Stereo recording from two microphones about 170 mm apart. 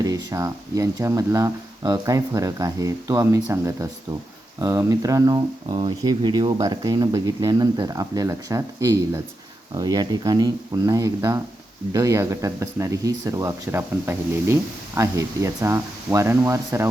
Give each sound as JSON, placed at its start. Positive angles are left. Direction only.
{"t": 0.0, "sound": "speech", "side_deg": -20}